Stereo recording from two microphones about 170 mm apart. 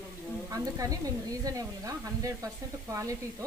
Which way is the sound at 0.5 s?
20° right (ahead or behind).